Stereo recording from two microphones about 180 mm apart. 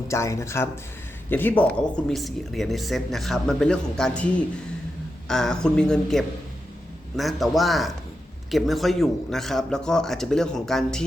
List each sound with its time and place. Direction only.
0.1 s speech: 15° left (ahead or behind)